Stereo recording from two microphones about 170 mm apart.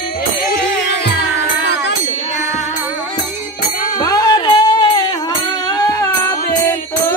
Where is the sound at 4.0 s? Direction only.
20° left (ahead or behind).